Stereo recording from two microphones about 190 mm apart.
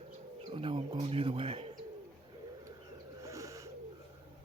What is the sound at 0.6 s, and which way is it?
Speech, 30° right (ahead or behind).